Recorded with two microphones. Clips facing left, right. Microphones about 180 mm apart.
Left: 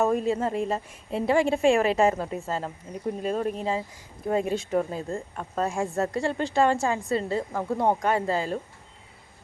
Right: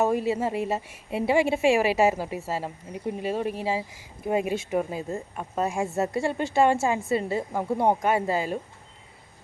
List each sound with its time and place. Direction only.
0.0 s a woman's voice: 5° right (ahead or behind)